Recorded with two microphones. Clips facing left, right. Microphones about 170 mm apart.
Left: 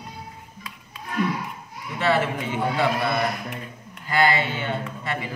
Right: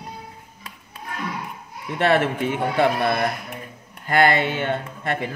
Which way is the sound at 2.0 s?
55° right (ahead or behind).